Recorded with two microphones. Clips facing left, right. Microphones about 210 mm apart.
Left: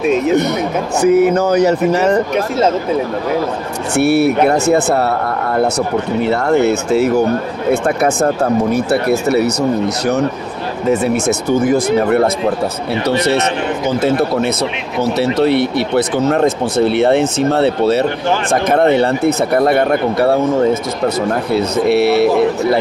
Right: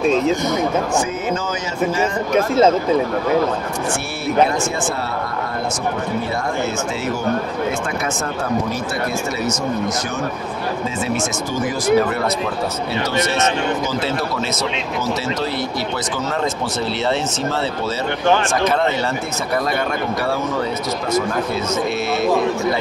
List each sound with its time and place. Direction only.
1.0 s speech: 65° left (ahead or behind)
3.9 s speech: 65° left (ahead or behind)
8.7 s speech: 65° left (ahead or behind)
10.9 s speech: 60° left (ahead or behind)
15.1 s speech: 60° left (ahead or behind)
21.5 s speech: 65° left (ahead or behind)